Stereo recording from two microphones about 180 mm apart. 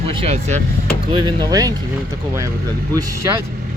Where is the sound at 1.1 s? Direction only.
25° right (ahead or behind).